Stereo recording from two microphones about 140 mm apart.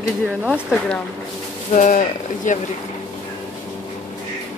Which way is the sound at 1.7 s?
65° left (ahead or behind).